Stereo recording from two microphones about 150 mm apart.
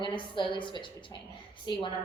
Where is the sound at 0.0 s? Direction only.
35° left (ahead or behind).